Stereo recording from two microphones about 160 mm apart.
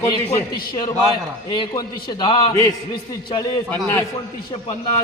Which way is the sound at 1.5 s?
25° left (ahead or behind).